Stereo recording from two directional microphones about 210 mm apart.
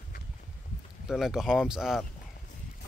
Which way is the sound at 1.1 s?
Centre (ahead or behind).